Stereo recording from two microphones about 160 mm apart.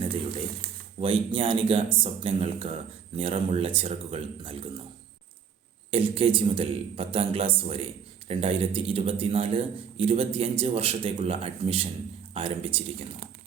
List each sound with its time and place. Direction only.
1.0 s a man's voice: 35° right (ahead or behind)
5.9 s a man's voice: 35° right (ahead or behind)